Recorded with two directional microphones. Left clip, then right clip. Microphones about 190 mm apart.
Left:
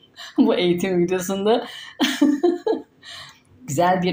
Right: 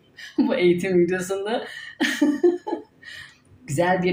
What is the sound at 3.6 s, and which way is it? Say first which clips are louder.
Speech: left 2 dB; 30° left (ahead or behind).